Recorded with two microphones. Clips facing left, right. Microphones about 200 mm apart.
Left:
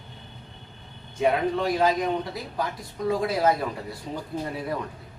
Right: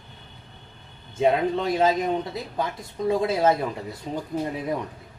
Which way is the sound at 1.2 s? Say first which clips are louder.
Right 2 dB; 25° right (ahead or behind).